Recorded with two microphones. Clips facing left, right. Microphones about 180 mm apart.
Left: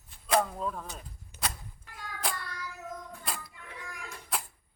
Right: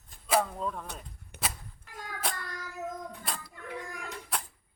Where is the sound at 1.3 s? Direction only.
65° right (ahead or behind).